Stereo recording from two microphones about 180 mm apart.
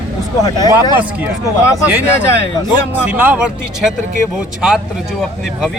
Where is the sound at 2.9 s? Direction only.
10° right (ahead or behind).